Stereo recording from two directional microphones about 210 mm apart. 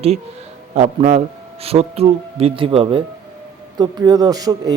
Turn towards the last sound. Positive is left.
turn(degrees=-20)  # may be behind; listen again after turning